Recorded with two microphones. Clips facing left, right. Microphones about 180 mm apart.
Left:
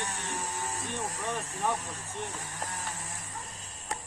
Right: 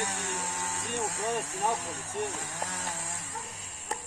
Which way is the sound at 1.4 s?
80° right.